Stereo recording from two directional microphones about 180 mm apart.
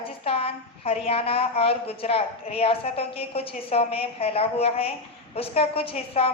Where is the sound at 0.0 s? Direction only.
30° left (ahead or behind).